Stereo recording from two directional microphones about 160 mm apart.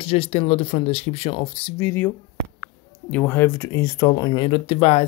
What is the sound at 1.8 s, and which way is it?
Speech, 15° left (ahead or behind).